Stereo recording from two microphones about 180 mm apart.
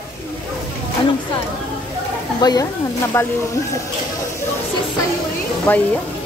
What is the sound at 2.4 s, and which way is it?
Speech, 20° left (ahead or behind).